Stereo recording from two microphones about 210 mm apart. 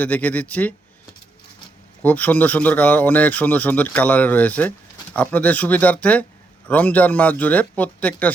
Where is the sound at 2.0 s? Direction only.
5° left (ahead or behind).